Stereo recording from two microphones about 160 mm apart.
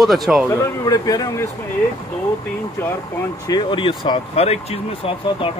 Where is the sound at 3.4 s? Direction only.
30° left (ahead or behind).